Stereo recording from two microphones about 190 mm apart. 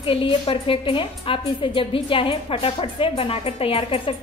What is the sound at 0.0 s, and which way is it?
A woman's voice, 30° left (ahead or behind).